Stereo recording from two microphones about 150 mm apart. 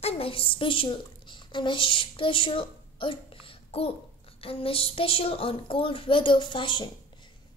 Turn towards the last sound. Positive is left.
turn(degrees=35)  # may be behind; listen again after turning